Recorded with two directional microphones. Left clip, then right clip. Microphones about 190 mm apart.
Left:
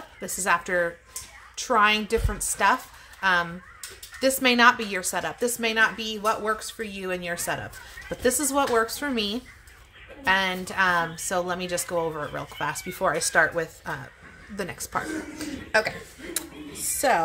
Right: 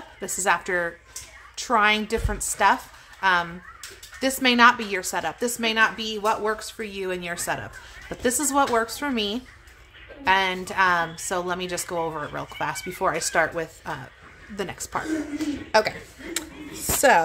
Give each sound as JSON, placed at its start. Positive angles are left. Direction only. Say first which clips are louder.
{"t": 0.2, "sound": "a woman's voice", "louder": "right 1 dB", "side_deg": -10}
{"t": 15.7, "sound": "a man's voice", "louder": "right 3 dB", "side_deg": -25}